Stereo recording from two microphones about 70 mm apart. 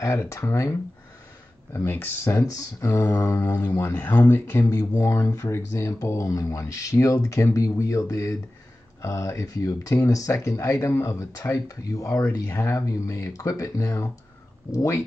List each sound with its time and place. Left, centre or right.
0.0 s speech: left
1.7 s speech: left
2.3 s speech: left
4.6 s speech: left
6.2 s speech: left
10.0 s speech: left